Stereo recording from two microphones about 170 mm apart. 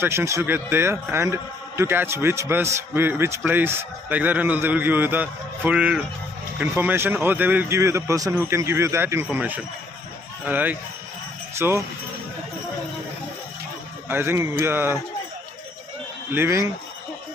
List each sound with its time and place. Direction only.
0.0 s a man's voice: 15° right (ahead or behind)
14.1 s a man's voice: 15° right (ahead or behind)
16.3 s a man's voice: 15° right (ahead or behind)